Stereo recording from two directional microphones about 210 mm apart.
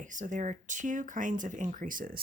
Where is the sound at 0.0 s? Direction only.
35° right (ahead or behind).